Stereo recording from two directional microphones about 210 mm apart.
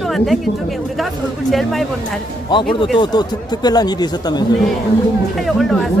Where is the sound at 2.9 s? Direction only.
20° left (ahead or behind).